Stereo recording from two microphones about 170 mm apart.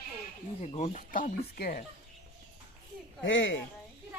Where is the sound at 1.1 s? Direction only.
60° left (ahead or behind).